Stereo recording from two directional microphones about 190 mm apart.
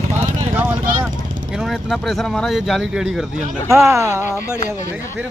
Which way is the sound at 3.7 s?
15° right (ahead or behind).